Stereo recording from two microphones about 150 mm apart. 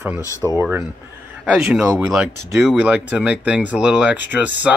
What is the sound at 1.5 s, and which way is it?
Speech, 5° right (ahead or behind).